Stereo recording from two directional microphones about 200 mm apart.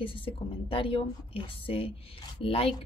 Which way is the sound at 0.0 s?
25° left (ahead or behind).